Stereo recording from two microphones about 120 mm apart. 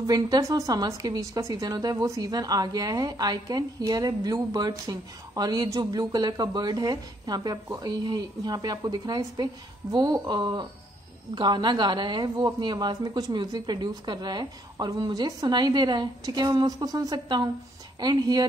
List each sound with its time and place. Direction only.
0.0 s a woman's voice: 30° right (ahead or behind)